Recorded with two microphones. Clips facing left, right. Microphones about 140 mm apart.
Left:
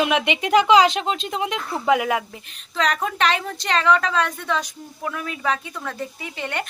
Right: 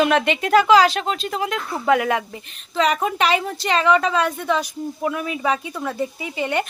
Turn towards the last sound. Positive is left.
turn(degrees=-5)  # may be behind; listen again after turning